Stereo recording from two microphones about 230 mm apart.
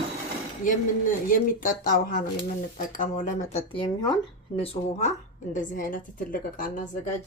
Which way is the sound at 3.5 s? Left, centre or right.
Left.